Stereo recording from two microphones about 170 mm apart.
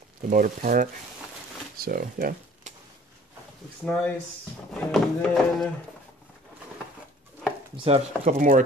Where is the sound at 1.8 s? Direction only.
60° right (ahead or behind).